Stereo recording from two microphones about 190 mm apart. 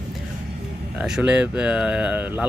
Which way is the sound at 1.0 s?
5° right (ahead or behind).